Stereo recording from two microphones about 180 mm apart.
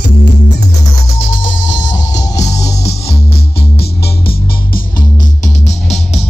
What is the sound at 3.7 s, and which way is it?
Music, 60° left (ahead or behind).